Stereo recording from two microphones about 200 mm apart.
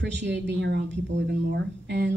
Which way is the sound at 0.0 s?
60° right (ahead or behind).